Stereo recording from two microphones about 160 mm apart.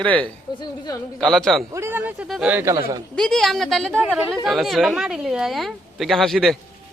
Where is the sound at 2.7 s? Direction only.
20° right (ahead or behind).